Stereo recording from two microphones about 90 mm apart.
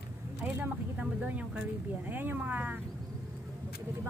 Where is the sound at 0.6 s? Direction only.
15° right (ahead or behind).